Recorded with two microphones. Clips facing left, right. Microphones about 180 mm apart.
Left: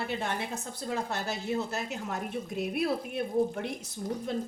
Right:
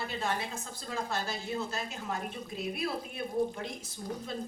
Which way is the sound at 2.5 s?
65° left (ahead or behind).